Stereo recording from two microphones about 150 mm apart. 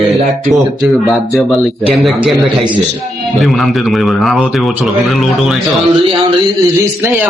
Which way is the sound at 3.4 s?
Centre (ahead or behind).